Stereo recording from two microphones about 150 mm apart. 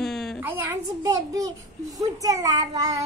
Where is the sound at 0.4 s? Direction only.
15° right (ahead or behind).